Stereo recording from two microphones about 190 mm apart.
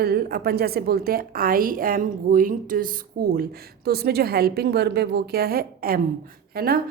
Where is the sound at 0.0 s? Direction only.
55° right (ahead or behind).